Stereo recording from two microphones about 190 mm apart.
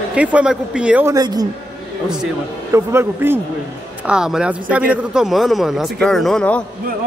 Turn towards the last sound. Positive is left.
turn(degrees=5)  # may be behind; listen again after turning